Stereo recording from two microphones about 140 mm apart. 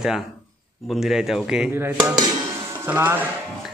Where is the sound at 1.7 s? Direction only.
15° right (ahead or behind).